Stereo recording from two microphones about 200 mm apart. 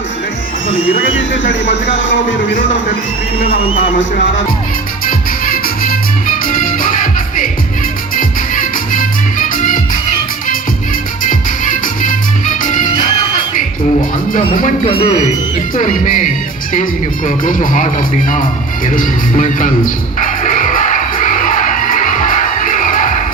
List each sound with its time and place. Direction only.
1.6 s speech: 70° left (ahead or behind)
3.5 s a man's voice: 30° left (ahead or behind)
5.0 s music: 45° left (ahead or behind)
11.2 s music: 40° left (ahead or behind)
14.3 s speech: 40° left (ahead or behind)
14.8 s speech: 30° left (ahead or behind)
18.9 s music: 40° left (ahead or behind)